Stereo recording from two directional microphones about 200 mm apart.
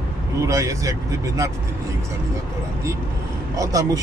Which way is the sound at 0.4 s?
15° right (ahead or behind).